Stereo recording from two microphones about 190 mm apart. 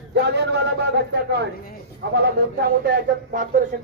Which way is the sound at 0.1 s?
65° right (ahead or behind).